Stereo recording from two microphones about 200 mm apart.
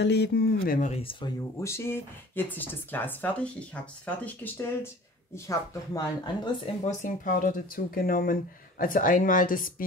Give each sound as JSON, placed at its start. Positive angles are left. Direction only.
{"t": 0.0, "sound": "speech", "side_deg": 55}
{"t": 1.6, "sound": "speech", "side_deg": 10}
{"t": 6.8, "sound": "speech", "side_deg": 35}